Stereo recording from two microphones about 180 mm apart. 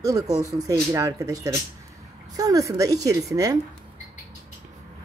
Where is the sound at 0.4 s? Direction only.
20° right (ahead or behind).